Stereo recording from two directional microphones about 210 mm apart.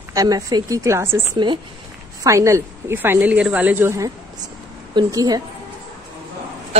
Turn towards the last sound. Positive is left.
turn(degrees=-15)  # may be behind; listen again after turning